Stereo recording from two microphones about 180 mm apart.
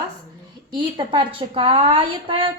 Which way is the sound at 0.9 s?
30° right (ahead or behind).